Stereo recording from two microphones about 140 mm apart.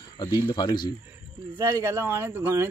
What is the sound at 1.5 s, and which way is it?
Speech, 25° right (ahead or behind).